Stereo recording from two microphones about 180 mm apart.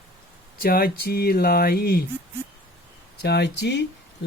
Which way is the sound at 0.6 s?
55° left (ahead or behind).